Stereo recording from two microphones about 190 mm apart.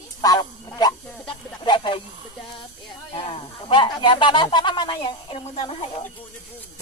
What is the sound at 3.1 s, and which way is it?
Speech, 30° left (ahead or behind).